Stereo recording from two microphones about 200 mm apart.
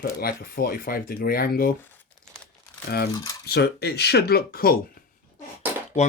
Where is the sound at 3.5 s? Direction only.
55° left (ahead or behind).